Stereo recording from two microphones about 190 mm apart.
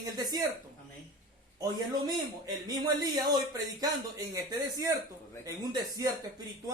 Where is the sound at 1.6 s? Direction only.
20° right (ahead or behind).